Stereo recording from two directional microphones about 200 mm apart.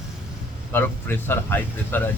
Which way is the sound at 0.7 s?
10° left (ahead or behind).